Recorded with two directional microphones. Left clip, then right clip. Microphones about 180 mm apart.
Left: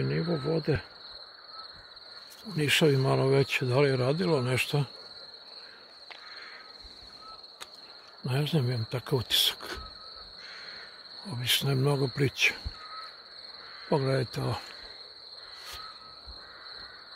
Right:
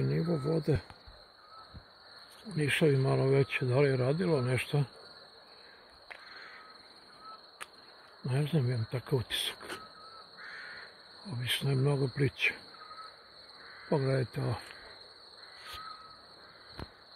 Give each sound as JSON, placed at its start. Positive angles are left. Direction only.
{"t": 0.4, "sound": "speech", "side_deg": -5}
{"t": 2.5, "sound": "speech", "side_deg": 15}
{"t": 8.3, "sound": "speech", "side_deg": 15}
{"t": 11.2, "sound": "speech", "side_deg": 15}
{"t": 13.8, "sound": "speech", "side_deg": 15}